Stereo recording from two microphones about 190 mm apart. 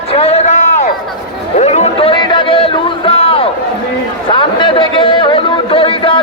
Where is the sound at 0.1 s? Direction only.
30° left (ahead or behind).